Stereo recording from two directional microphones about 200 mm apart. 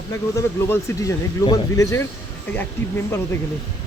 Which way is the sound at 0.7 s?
15° left (ahead or behind).